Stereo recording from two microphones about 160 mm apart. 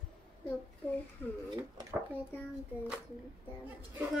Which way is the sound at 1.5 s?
25° right (ahead or behind).